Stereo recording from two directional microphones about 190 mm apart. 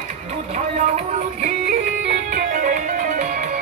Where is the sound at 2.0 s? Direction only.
40° right (ahead or behind).